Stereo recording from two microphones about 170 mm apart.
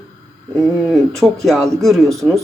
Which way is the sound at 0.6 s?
Centre (ahead or behind).